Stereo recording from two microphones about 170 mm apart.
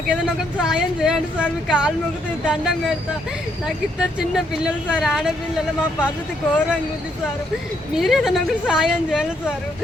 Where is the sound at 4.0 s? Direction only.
5° right (ahead or behind).